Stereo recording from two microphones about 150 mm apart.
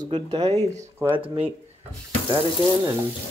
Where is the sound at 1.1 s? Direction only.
35° right (ahead or behind).